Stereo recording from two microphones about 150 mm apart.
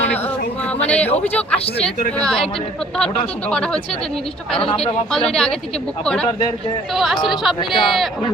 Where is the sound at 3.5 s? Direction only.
5° left (ahead or behind).